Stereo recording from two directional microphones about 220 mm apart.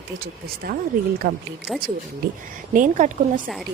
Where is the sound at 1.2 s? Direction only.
45° right (ahead or behind).